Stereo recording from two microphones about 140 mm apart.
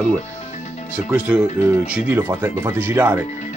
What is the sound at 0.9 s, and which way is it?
Speech, 10° right (ahead or behind).